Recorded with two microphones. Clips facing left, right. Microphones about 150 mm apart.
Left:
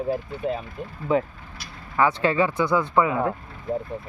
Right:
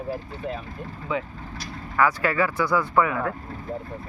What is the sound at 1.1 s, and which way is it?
Speech, 40° left (ahead or behind).